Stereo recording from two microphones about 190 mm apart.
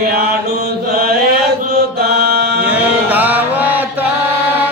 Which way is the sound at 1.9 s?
55° right (ahead or behind).